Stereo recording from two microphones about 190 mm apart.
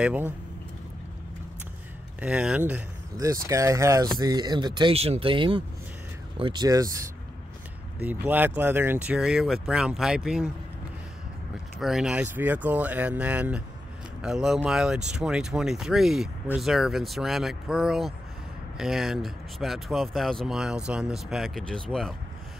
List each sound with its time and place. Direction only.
0.0 s speech: 10° right (ahead or behind)
2.1 s speech: 5° right (ahead or behind)
11.8 s speech: 5° right (ahead or behind)